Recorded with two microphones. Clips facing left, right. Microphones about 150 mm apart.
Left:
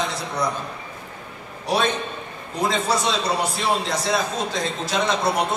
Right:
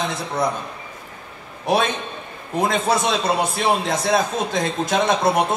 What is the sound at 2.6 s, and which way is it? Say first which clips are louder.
A man's voice: right 3 dB; 50° right (ahead or behind).